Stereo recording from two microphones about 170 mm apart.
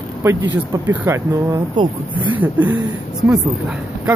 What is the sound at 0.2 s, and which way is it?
Speech, 15° right (ahead or behind).